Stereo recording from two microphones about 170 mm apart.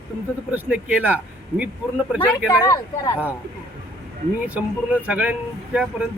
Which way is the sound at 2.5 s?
20° left (ahead or behind).